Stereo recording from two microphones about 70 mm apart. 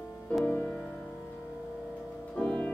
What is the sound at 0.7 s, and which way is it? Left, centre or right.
Music, centre.